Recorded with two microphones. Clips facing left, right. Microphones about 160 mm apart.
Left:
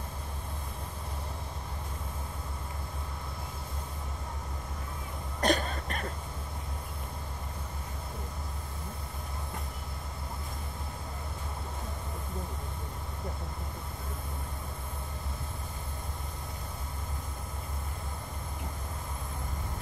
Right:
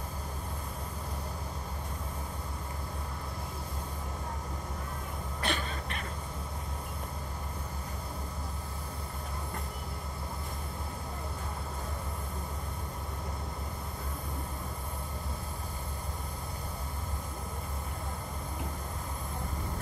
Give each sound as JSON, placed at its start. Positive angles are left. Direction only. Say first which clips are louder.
{"t": 5.4, "sound": "cough", "louder": "left 7 dB", "side_deg": 40}